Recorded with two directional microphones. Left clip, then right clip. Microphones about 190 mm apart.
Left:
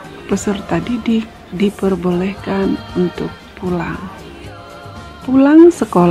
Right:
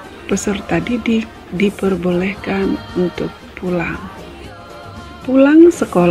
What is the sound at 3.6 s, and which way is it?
Speech, 15° left (ahead or behind).